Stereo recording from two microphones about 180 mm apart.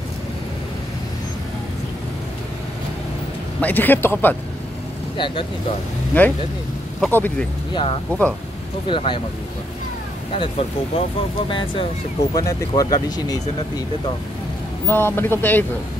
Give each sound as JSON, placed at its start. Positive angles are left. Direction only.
{"t": 3.6, "sound": "speech", "side_deg": 10}
{"t": 5.1, "sound": "speech", "side_deg": 30}
{"t": 6.1, "sound": "speech", "side_deg": 10}
{"t": 7.7, "sound": "speech", "side_deg": 30}
{"t": 11.0, "sound": "speech", "side_deg": 30}
{"t": 14.9, "sound": "speech", "side_deg": 10}